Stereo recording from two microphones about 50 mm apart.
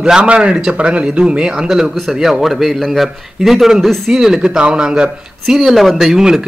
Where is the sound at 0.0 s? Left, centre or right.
Centre.